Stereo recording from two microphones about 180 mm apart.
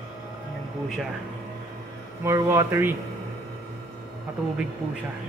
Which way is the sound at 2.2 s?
15° right (ahead or behind).